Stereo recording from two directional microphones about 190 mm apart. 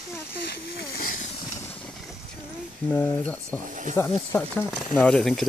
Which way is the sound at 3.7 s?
40° right (ahead or behind).